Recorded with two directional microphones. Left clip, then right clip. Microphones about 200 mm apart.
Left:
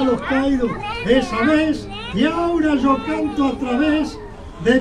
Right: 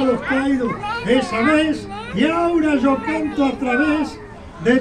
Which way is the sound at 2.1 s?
50° right (ahead or behind).